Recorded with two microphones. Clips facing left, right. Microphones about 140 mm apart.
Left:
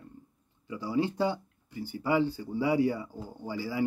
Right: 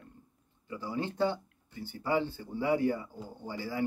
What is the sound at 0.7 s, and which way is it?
Speech, 10° left (ahead or behind).